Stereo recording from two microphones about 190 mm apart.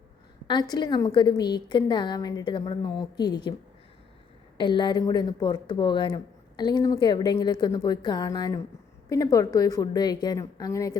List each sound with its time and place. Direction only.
0.4 s a woman's voice: 25° left (ahead or behind)
4.5 s a woman's voice: 25° left (ahead or behind)